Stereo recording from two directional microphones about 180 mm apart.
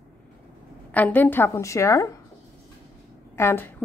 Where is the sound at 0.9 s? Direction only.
10° left (ahead or behind).